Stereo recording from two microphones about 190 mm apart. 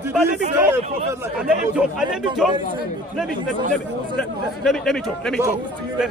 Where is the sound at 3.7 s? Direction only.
5° left (ahead or behind).